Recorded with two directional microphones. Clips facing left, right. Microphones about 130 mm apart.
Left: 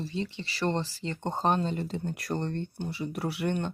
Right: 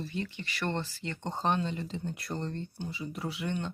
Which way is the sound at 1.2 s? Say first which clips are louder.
Left 3 dB; 45° left (ahead or behind).